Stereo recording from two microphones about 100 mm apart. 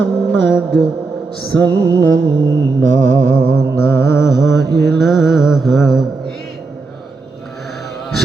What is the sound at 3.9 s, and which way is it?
Mantra, 30° left (ahead or behind).